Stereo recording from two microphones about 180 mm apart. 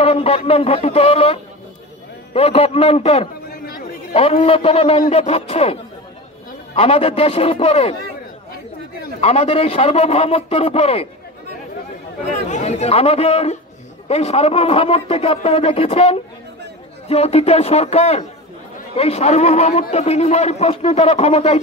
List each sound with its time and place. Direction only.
0.0 s a man's voice: 30° left (ahead or behind)
3.4 s a sound: 55° left (ahead or behind)
4.1 s a man's voice: 35° left (ahead or behind)
9.2 s a man's voice: 35° left (ahead or behind)
12.4 s a man's voice: 40° left (ahead or behind)